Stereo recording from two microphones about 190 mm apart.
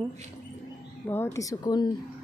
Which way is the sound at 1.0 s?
15° left (ahead or behind).